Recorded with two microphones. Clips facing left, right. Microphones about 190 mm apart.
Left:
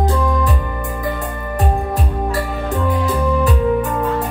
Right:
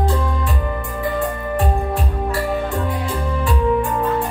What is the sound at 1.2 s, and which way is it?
Music, 40° left (ahead or behind).